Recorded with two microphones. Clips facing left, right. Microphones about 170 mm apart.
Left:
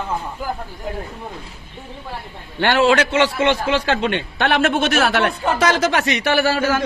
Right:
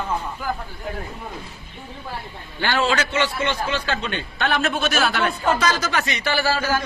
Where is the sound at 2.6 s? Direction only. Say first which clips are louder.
Left 6 dB; 70° left (ahead or behind).